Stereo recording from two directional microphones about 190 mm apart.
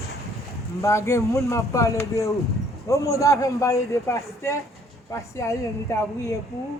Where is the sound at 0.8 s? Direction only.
15° left (ahead or behind).